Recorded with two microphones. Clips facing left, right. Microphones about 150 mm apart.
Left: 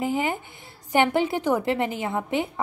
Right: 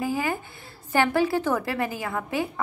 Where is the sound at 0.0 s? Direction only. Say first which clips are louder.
Left 1 dB; 20° left (ahead or behind).